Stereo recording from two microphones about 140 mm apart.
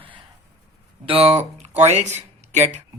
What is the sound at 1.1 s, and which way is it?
Speech, 45° right (ahead or behind).